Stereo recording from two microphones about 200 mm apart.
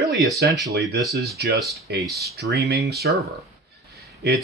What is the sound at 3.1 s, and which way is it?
Speech, centre (ahead or behind).